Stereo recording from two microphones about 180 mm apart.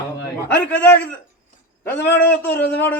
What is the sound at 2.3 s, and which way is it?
Speech, 10° left (ahead or behind).